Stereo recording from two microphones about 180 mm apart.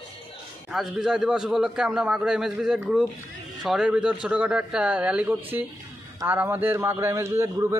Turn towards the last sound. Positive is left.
turn(degrees=-15)  # may be behind; listen again after turning